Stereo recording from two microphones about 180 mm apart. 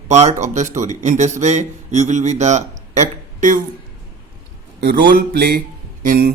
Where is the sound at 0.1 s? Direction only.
40° right (ahead or behind).